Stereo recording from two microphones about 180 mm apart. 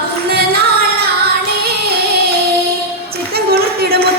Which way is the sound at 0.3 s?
60° right (ahead or behind).